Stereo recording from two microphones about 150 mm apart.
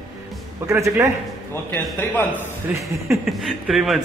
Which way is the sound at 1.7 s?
15° left (ahead or behind).